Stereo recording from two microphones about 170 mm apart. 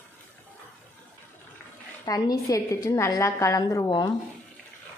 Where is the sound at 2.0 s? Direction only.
20° left (ahead or behind).